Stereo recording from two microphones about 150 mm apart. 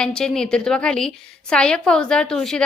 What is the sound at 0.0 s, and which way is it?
A woman's voice, 5° left (ahead or behind).